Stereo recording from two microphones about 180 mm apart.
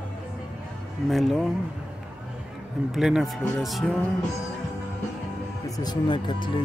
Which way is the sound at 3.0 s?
5° right (ahead or behind).